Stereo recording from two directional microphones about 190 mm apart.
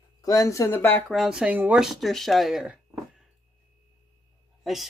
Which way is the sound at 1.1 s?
5° right (ahead or behind).